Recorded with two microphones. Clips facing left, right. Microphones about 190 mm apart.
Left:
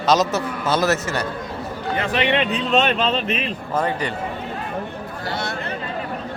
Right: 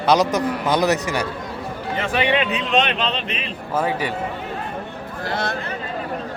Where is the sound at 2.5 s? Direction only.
40° left (ahead or behind).